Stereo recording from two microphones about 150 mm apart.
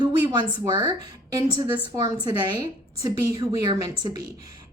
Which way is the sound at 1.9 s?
25° right (ahead or behind).